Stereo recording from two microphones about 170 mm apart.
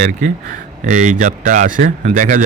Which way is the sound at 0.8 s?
45° right (ahead or behind).